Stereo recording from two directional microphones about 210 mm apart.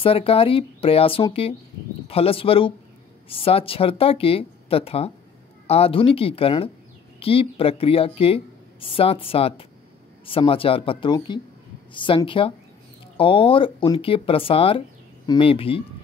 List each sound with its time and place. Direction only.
0.0 s speech: 25° left (ahead or behind)